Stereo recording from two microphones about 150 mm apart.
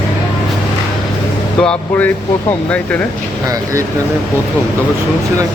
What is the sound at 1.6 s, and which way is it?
Speech, 10° left (ahead or behind).